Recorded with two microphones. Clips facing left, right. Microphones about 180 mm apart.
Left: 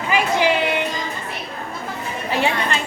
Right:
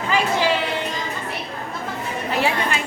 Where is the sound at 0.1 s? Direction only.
15° left (ahead or behind).